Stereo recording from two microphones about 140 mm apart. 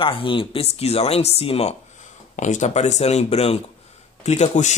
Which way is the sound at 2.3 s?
60° left (ahead or behind).